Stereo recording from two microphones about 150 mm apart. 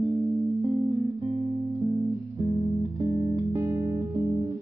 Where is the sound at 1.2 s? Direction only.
50° right (ahead or behind).